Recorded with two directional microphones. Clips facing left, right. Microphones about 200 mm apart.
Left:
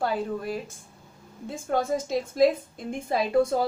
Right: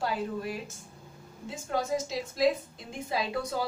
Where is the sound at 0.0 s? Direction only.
50° left (ahead or behind).